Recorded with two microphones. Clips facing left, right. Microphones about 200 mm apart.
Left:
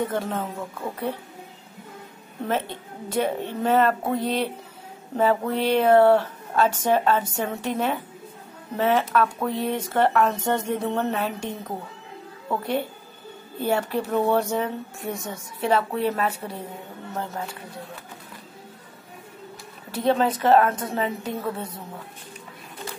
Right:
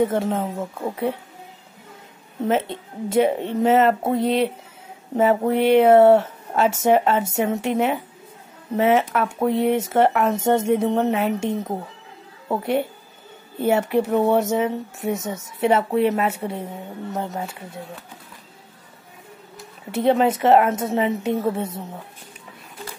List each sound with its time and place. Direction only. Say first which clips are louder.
0.1 s speech: right 5 dB; 20° right (ahead or behind)
2.4 s a woman's voice: right 5 dB; 25° right (ahead or behind)
19.9 s speech: right 4 dB; 25° right (ahead or behind)